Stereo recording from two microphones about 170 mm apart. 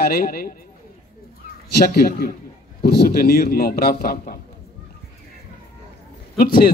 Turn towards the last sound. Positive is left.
turn(degrees=60)  # may be behind; listen again after turning